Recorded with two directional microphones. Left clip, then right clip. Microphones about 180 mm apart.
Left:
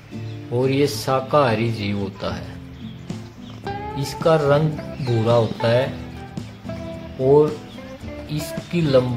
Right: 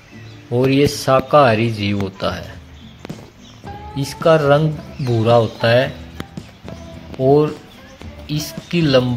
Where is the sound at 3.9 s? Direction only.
15° right (ahead or behind).